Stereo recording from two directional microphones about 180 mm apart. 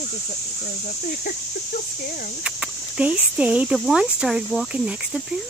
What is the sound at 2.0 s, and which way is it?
Speech, 55° left (ahead or behind).